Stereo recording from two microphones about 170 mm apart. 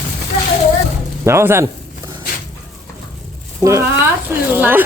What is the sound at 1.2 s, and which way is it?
Speech, 15° right (ahead or behind).